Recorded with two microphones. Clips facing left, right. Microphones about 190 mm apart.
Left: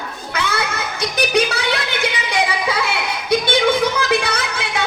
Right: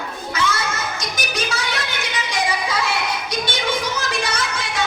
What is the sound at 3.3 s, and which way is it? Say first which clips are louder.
Music: left 11 dB; 60° left (ahead or behind).